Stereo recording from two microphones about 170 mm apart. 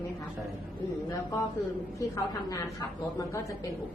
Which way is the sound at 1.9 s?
20° left (ahead or behind).